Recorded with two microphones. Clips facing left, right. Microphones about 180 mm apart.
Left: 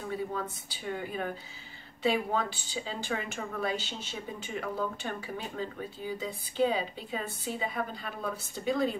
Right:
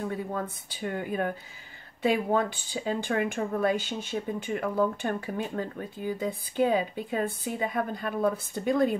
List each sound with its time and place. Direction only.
0.3 s speech: 50° right (ahead or behind)